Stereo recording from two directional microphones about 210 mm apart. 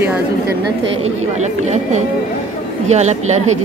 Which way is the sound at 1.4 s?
35° right (ahead or behind).